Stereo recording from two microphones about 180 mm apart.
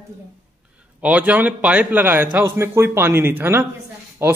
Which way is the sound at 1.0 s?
10° right (ahead or behind).